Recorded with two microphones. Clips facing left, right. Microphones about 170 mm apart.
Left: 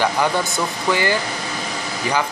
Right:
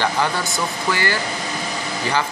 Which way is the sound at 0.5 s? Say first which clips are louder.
Left 2 dB; 20° left (ahead or behind).